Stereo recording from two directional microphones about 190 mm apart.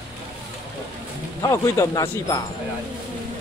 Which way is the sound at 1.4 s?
15° left (ahead or behind).